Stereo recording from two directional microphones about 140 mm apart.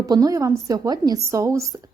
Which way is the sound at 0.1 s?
25° right (ahead or behind).